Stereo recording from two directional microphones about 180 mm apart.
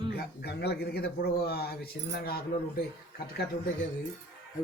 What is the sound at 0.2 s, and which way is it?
Speech, 65° left (ahead or behind).